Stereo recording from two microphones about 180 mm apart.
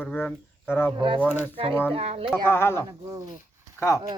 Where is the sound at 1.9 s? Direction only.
35° right (ahead or behind).